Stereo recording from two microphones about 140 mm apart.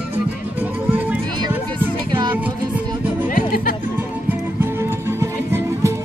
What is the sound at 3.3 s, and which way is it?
Music, 90° left.